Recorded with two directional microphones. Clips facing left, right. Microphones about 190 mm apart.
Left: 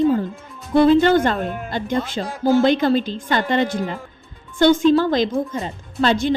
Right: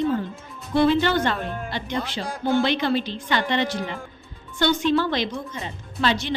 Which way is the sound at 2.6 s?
45° left (ahead or behind).